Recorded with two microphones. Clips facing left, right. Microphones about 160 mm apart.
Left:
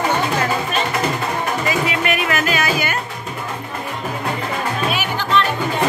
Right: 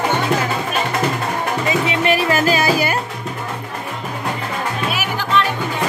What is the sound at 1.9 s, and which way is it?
Music, 30° right (ahead or behind).